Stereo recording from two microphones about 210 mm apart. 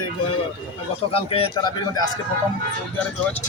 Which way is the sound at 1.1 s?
30° left (ahead or behind).